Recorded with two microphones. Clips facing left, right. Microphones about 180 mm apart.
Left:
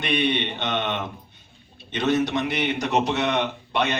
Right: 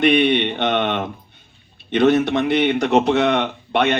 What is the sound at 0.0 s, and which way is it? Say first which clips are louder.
A man's voice: right 8 dB; 55° right (ahead or behind).